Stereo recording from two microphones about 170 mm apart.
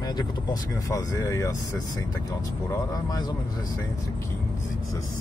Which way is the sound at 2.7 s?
20° left (ahead or behind).